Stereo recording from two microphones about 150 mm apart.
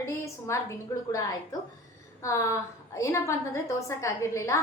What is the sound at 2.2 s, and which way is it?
A woman's voice, 20° left (ahead or behind).